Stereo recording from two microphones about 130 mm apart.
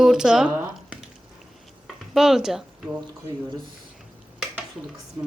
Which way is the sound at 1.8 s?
Centre (ahead or behind).